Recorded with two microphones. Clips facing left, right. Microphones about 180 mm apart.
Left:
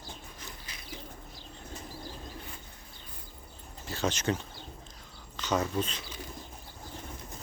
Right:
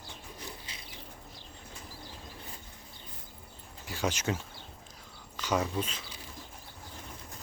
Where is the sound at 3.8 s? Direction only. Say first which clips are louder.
Left 2 dB; 10° right (ahead or behind).